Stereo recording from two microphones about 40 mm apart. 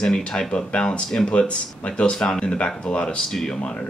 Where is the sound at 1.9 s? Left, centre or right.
Left.